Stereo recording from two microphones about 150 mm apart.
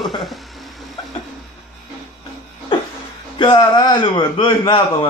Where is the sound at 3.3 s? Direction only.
30° left (ahead or behind).